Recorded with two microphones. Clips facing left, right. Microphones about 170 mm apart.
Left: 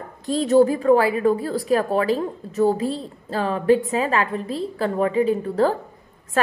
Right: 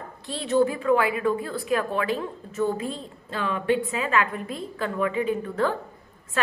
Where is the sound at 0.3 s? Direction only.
40° left (ahead or behind).